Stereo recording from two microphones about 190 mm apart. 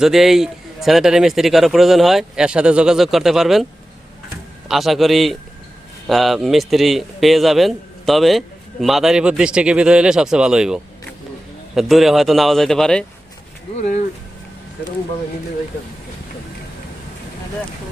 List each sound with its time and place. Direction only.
0.0 s speech: centre (ahead or behind)
4.7 s speech: centre (ahead or behind)
13.8 s speech: 40° left (ahead or behind)